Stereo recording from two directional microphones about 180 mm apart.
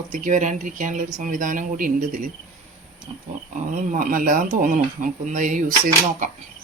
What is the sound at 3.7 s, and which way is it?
Speech, 50° right (ahead or behind).